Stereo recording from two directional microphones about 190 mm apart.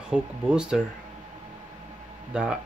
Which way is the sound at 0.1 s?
5° right (ahead or behind).